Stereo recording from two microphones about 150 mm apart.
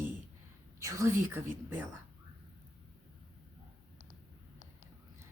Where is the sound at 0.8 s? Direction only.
20° right (ahead or behind).